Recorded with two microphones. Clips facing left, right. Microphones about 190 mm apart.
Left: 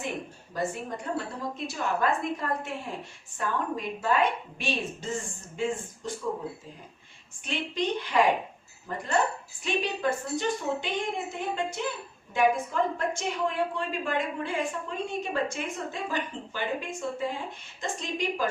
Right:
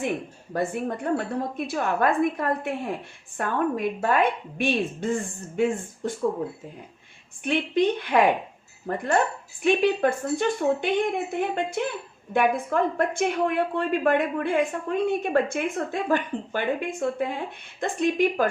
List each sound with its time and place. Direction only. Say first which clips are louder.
0.5 s a woman's voice: right 5 dB; 60° right (ahead or behind)
7.4 s a woman's voice: right 8 dB; 55° right (ahead or behind)